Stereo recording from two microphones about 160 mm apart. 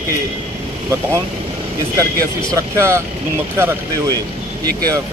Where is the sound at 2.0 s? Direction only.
20° right (ahead or behind).